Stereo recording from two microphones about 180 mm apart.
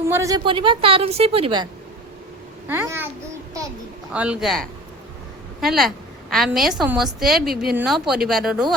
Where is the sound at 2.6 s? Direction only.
10° right (ahead or behind).